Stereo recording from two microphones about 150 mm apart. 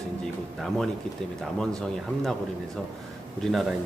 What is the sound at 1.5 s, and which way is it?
Speech, 5° left (ahead or behind).